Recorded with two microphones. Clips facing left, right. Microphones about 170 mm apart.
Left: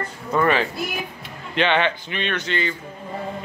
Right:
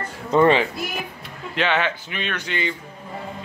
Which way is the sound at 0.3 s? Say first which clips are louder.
Right 4 dB; 25° right (ahead or behind).